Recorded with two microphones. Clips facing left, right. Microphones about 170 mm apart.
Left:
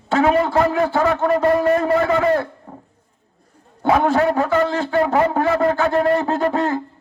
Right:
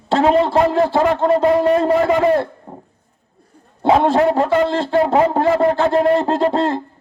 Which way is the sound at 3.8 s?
30° right (ahead or behind).